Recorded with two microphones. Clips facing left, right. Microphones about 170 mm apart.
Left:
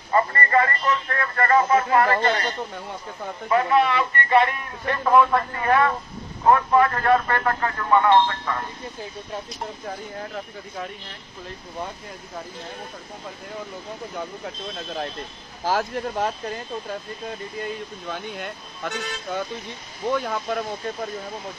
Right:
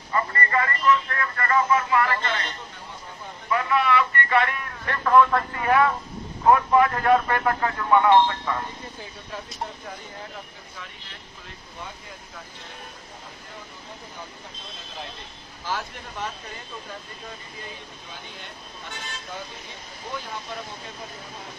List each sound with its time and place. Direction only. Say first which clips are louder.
0.1 s a man's voice: left 5 dB; 40° left (ahead or behind); by 5.2 s 20° left (ahead or behind)
5.3 s speech: left 1 dB; 5° right (ahead or behind)
15.7 s speech: left 8 dB; 50° left (ahead or behind)
18.0 s speech: left 13 dB; 65° left (ahead or behind)